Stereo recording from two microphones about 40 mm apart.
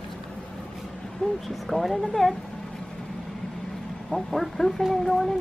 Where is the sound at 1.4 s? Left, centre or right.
Centre.